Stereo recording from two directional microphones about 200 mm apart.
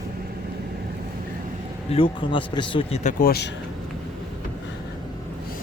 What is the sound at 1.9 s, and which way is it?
Speech, 25° left (ahead or behind).